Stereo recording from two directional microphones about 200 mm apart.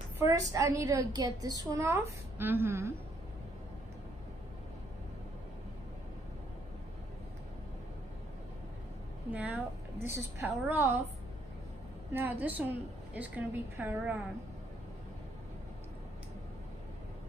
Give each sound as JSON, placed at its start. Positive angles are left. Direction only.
{"t": 0.2, "sound": "a woman's voice", "side_deg": -15}
{"t": 9.3, "sound": "a woman's voice", "side_deg": -10}
{"t": 12.1, "sound": "a woman's voice", "side_deg": -10}